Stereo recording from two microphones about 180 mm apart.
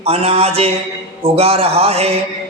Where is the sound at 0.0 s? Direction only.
35° right (ahead or behind).